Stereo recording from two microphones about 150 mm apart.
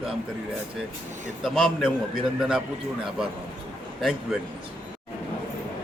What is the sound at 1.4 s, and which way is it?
Speech, centre (ahead or behind).